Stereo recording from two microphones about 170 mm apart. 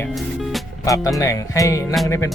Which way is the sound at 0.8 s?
20° left (ahead or behind).